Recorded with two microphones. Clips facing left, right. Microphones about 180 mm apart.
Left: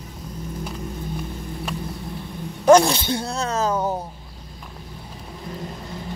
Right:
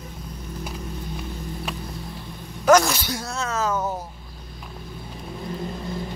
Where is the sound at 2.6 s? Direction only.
30° left (ahead or behind).